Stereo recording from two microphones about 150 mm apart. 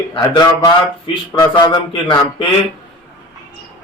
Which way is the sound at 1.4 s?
30° left (ahead or behind).